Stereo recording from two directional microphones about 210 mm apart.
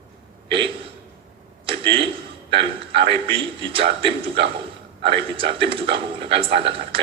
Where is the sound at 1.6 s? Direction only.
25° right (ahead or behind).